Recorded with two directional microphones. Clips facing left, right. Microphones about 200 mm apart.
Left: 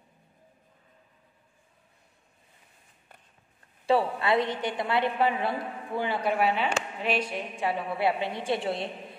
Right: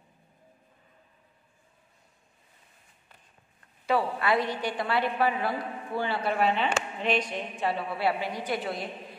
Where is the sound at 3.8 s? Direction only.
25° left (ahead or behind).